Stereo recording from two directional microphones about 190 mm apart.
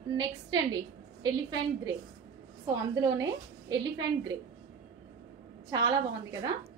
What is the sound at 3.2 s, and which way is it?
A woman's voice, 20° right (ahead or behind).